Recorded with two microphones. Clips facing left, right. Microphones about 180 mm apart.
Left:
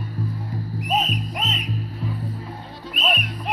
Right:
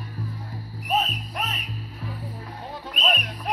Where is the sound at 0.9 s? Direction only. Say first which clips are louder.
Left 1 dB; 20° left (ahead or behind).